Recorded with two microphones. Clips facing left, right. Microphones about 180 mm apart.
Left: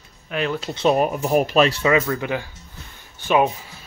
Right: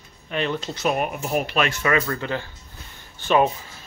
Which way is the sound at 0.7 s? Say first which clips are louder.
Left 9 dB; 30° left (ahead or behind).